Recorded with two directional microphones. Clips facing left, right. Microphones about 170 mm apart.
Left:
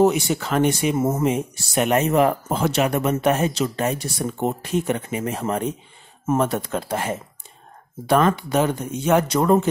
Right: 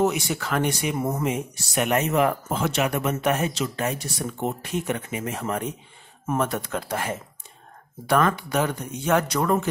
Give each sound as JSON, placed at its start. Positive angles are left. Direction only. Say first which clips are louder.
{"t": 0.0, "sound": "speech", "louder": "left 5 dB", "side_deg": 30}